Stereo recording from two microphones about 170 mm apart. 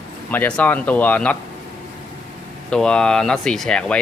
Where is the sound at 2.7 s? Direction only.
5° left (ahead or behind).